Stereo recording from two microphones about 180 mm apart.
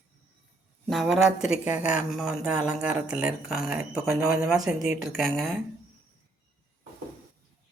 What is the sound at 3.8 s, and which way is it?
Speech, 15° right (ahead or behind).